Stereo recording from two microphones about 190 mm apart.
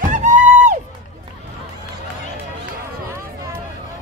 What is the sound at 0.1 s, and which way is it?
Music, 40° right (ahead or behind).